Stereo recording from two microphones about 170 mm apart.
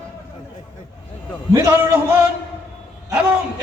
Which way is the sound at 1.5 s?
15° right (ahead or behind).